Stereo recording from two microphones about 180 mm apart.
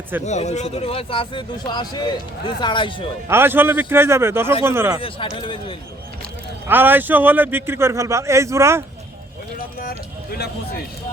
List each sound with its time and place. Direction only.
0.3 s speech: 40° left (ahead or behind)
3.2 s a man's voice: 15° right (ahead or behind)
4.9 s speech: 30° left (ahead or behind)
6.7 s a man's voice: 10° right (ahead or behind)
10.3 s speech: 60° left (ahead or behind)